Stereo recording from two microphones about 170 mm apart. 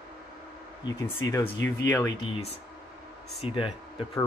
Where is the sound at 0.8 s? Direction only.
15° left (ahead or behind).